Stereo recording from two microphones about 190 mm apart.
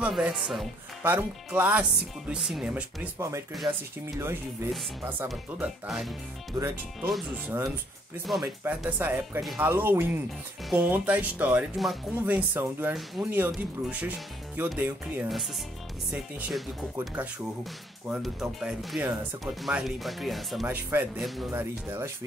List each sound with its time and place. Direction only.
0.0 s speech: 5° right (ahead or behind)
5.3 s speech: centre (ahead or behind)
6.5 s speech: 15° right (ahead or behind)
7.1 s speech: centre (ahead or behind)
9.7 s speech: 10° right (ahead or behind)